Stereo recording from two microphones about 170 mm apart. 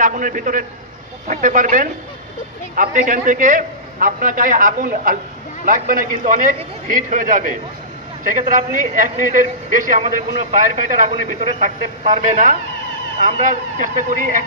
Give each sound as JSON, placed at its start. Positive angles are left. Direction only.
{"t": 0.0, "sound": "a man's voice", "side_deg": -50}